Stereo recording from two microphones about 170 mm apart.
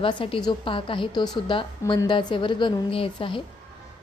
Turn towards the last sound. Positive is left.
turn(degrees=30)  # may be behind; listen again after turning